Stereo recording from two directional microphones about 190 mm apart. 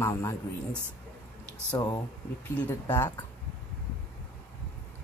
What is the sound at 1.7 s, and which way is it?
Speech, 20° left (ahead or behind).